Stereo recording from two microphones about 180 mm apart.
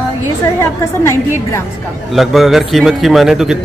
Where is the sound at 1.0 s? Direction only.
15° left (ahead or behind).